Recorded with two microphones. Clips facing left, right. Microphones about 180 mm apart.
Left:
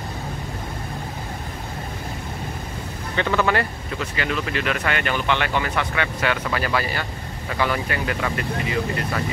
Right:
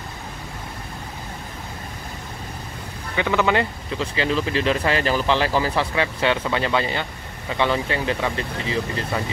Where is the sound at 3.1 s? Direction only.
15° right (ahead or behind).